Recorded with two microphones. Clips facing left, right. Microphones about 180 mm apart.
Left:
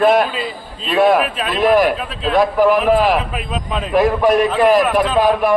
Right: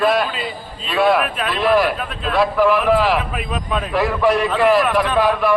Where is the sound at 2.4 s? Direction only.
40° left (ahead or behind).